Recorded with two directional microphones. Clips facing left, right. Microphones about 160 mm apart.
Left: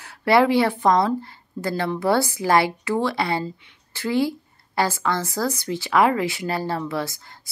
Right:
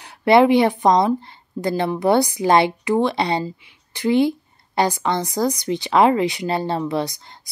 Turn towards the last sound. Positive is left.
turn(degrees=-20)  # may be behind; listen again after turning